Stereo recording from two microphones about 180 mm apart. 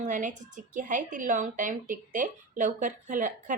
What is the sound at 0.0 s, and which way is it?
A woman's voice, 45° right (ahead or behind).